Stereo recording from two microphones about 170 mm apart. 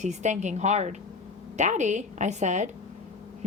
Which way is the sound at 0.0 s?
45° right (ahead or behind).